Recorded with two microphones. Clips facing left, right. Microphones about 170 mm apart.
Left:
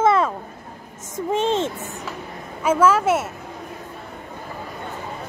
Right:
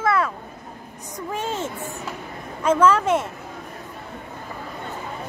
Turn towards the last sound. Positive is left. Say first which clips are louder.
# left 1 dB
turn(degrees=5)  # may be behind; listen again after turning